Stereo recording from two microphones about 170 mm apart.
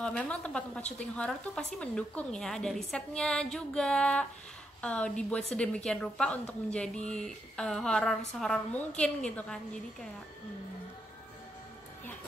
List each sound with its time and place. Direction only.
0.0 s a woman's voice: 5° left (ahead or behind)